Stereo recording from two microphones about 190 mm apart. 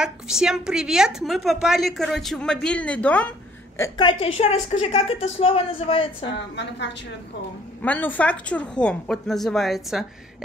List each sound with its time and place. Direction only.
0.0 s a woman's voice: 5° right (ahead or behind); by 6.3 s 30° left (ahead or behind)
6.5 s a woman's voice: 70° left (ahead or behind)
7.8 s a woman's voice: 10° left (ahead or behind)